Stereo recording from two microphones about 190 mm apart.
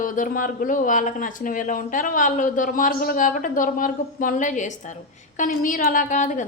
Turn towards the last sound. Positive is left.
turn(degrees=40)  # may be behind; listen again after turning